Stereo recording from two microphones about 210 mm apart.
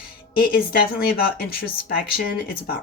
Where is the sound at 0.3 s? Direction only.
45° left (ahead or behind).